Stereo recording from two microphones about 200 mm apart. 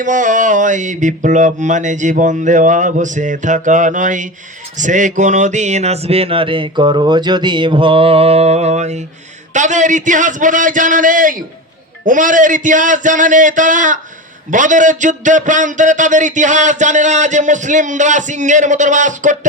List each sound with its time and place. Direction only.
0.0 s a man's voice: 40° right (ahead or behind)